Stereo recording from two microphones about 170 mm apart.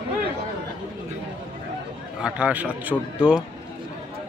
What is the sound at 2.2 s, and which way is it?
A man's voice, 10° right (ahead or behind).